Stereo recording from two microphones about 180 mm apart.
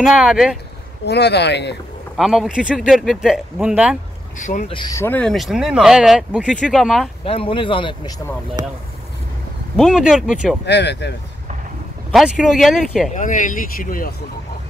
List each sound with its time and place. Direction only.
0.0 s speech: 5° right (ahead or behind)
1.0 s speech: 65° left (ahead or behind)
2.1 s speech: centre (ahead or behind)
4.4 s speech: 45° left (ahead or behind)
4.7 s speech: 20° left (ahead or behind); by 7.1 s centre (ahead or behind)
7.2 s speech: 30° left (ahead or behind)
9.8 s speech: 5° right (ahead or behind)
10.6 s speech: 70° left (ahead or behind)
12.1 s speech: centre (ahead or behind)
13.1 s speech: 45° left (ahead or behind)